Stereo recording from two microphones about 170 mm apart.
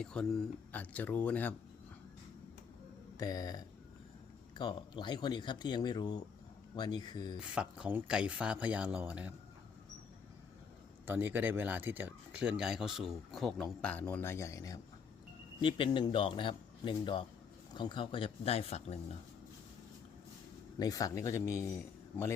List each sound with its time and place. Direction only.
0.0 s a man's voice: 5° left (ahead or behind)
3.2 s speech: 20° left (ahead or behind)
7.3 s speech: 5° right (ahead or behind)
11.0 s speech: 10° right (ahead or behind); by 18.9 s 40° left (ahead or behind)
20.7 s a man's voice: 20° left (ahead or behind)